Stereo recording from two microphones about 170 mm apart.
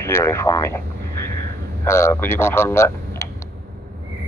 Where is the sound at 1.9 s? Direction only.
15° left (ahead or behind).